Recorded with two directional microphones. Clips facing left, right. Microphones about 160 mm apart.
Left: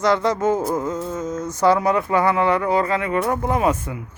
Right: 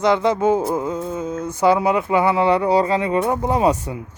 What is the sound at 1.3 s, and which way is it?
Speech, 60° right (ahead or behind).